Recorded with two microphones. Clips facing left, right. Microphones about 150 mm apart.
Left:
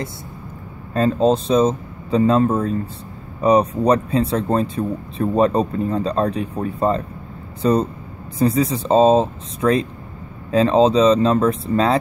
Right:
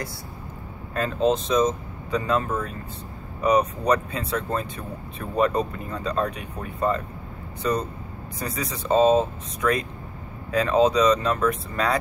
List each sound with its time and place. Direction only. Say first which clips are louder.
0.9 s speech: left 6 dB; 30° left (ahead or behind)